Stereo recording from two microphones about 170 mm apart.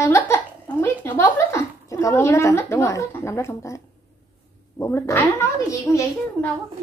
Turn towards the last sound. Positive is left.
turn(degrees=15)  # may be behind; listen again after turning